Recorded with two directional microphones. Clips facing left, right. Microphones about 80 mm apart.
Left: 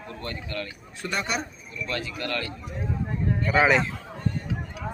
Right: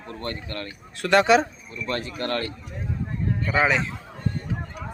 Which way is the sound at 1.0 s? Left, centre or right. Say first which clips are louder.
Right 12 dB; right.